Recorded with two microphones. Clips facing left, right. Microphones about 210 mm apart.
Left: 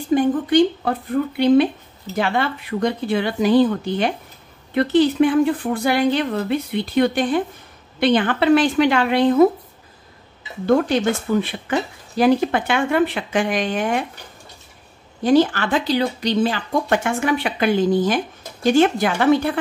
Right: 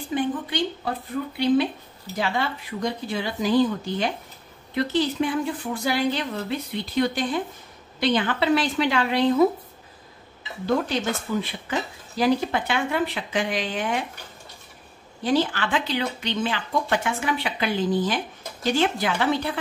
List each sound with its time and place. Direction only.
0.1 s a woman's voice: 45° left (ahead or behind)
11.3 s a woman's voice: 60° left (ahead or behind)
15.2 s speech: 45° left (ahead or behind)